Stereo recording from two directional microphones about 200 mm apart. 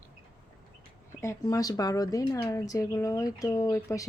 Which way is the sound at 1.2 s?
15° left (ahead or behind).